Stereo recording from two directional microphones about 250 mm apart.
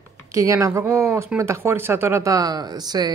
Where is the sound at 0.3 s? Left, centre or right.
Centre.